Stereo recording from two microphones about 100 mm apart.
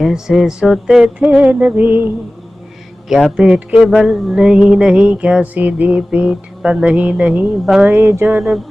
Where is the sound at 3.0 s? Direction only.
5° right (ahead or behind).